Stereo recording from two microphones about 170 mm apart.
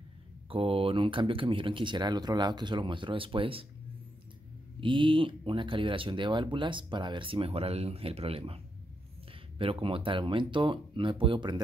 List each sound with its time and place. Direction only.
0.5 s speech: 35° right (ahead or behind)
4.7 s speech: 30° right (ahead or behind)
9.6 s speech: 30° right (ahead or behind)